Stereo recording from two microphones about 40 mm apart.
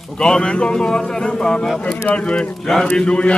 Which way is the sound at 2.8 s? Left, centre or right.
Centre.